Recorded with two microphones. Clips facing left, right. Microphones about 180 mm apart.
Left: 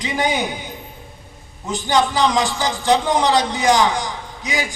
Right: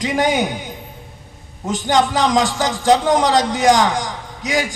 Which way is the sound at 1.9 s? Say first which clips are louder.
Right 1 dB; 45° right (ahead or behind).